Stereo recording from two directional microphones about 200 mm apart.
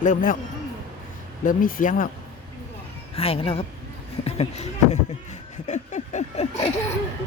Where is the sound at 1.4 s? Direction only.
45° left (ahead or behind).